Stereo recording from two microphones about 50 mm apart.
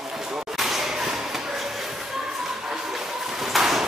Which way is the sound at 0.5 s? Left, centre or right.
Centre.